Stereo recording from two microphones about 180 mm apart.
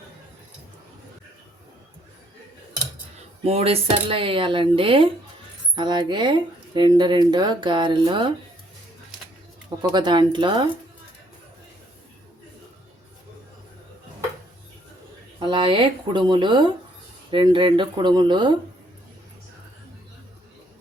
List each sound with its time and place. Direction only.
3.4 s speech: 35° right (ahead or behind)
9.9 s speech: 25° right (ahead or behind)
15.4 s speech: 25° right (ahead or behind)